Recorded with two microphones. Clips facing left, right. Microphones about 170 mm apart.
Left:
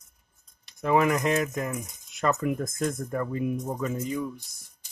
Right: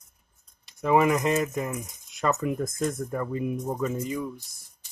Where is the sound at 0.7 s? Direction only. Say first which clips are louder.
Right 1 dB; 5° right (ahead or behind).